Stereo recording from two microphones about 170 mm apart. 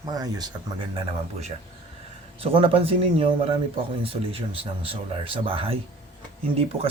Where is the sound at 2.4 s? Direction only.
35° right (ahead or behind).